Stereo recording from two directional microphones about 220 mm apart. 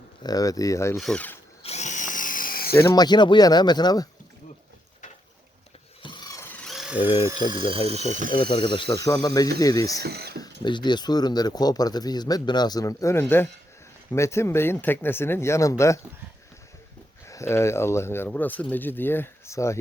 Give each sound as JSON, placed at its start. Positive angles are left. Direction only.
{"t": 0.2, "sound": "speech", "side_deg": 15}
{"t": 0.9, "sound": "speech", "side_deg": 5}
{"t": 1.6, "sound": "drill", "side_deg": 30}
{"t": 2.7, "sound": "speech", "side_deg": 20}
{"t": 6.0, "sound": "a sound", "side_deg": 20}
{"t": 7.0, "sound": "speech", "side_deg": 25}
{"t": 7.3, "sound": "speech", "side_deg": -20}
{"t": 8.3, "sound": "speech", "side_deg": 25}
{"t": 10.0, "sound": "speech", "side_deg": -45}
{"t": 10.6, "sound": "speech", "side_deg": 20}
{"t": 17.2, "sound": "speech", "side_deg": 10}